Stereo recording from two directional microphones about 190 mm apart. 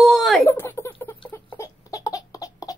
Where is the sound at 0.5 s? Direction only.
15° left (ahead or behind).